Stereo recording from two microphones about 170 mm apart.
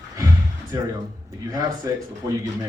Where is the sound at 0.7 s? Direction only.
20° right (ahead or behind).